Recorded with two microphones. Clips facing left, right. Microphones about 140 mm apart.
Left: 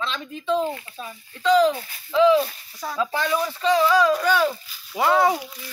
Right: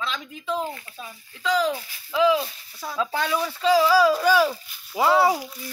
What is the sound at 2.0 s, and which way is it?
Speech, 5° right (ahead or behind).